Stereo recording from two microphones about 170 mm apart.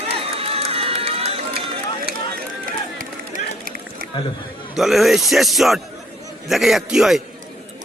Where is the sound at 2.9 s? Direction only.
55° right (ahead or behind).